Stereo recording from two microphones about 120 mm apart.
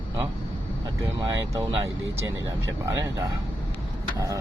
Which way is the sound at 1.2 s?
30° right (ahead or behind).